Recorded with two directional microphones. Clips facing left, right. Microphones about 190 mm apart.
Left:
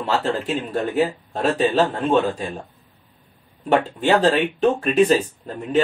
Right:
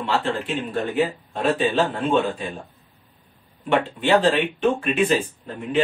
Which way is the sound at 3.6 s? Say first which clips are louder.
Left 2 dB; 40° left (ahead or behind).